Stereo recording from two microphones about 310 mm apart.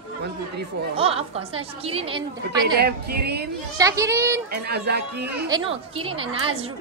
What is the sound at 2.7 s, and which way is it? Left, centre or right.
Speech, right.